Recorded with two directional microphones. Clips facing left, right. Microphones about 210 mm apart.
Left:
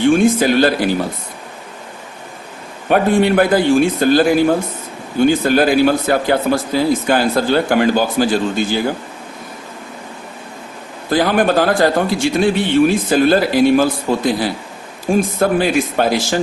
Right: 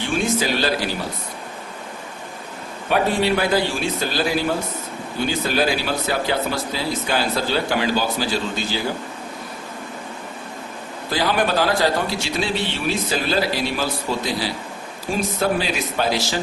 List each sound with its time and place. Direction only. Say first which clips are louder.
0.0 s speech: left 10 dB; 50° left (ahead or behind)
2.9 s speech: left 6 dB; 50° left (ahead or behind)
11.1 s speech: left 7 dB; 50° left (ahead or behind)